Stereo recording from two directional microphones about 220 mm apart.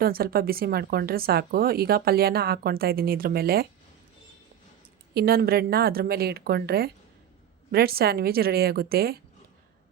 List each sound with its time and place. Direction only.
0.0 s speech: 45° right (ahead or behind)
5.1 s speech: 45° right (ahead or behind)